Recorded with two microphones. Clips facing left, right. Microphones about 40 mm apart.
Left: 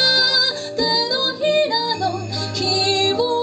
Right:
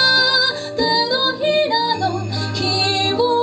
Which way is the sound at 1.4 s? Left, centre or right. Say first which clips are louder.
Even; centre.